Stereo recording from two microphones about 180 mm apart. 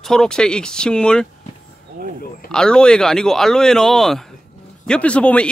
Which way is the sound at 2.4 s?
5° left (ahead or behind).